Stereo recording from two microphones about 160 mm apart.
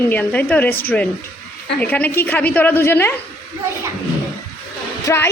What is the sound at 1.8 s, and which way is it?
A man's voice, 10° left (ahead or behind).